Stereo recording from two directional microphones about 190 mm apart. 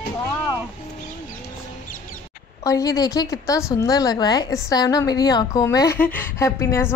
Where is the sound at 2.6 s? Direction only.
20° left (ahead or behind).